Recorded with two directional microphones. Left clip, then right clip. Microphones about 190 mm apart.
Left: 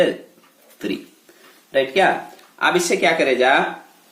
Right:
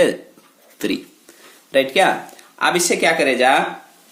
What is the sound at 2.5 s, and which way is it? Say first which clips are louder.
Speech: even; 30° right (ahead or behind).